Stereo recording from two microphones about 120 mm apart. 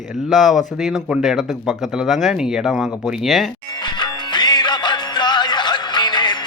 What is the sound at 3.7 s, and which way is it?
Music, 40° left (ahead or behind).